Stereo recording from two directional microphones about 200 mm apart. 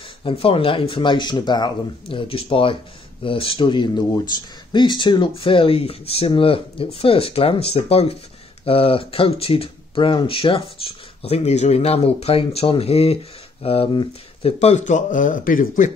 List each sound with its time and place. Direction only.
0.2 s speech: 30° left (ahead or behind)